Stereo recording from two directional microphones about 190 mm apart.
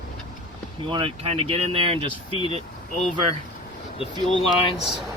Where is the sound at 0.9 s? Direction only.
25° right (ahead or behind).